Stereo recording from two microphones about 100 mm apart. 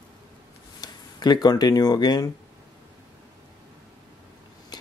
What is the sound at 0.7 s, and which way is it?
Speech, 45° left (ahead or behind).